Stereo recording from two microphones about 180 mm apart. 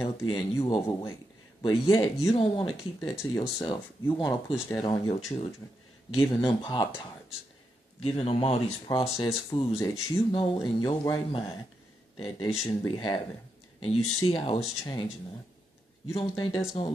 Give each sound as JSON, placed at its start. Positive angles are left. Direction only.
{"t": 0.0, "sound": "speech", "side_deg": 20}
{"t": 6.1, "sound": "speech", "side_deg": 25}
{"t": 8.0, "sound": "speech", "side_deg": 35}
{"t": 16.2, "sound": "speech", "side_deg": 25}